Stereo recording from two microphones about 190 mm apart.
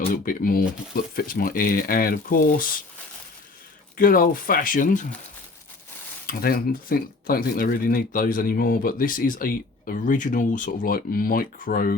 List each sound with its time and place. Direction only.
0.1 s speech: 45° left (ahead or behind)
3.9 s speech: 45° left (ahead or behind)
6.2 s speech: 50° left (ahead or behind)